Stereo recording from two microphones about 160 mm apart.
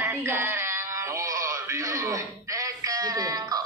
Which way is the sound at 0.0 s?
15° right (ahead or behind).